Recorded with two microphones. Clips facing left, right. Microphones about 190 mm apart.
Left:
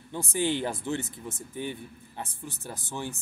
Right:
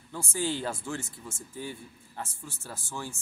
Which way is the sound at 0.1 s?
20° left (ahead or behind).